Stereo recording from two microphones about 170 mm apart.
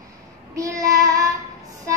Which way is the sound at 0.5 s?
20° right (ahead or behind).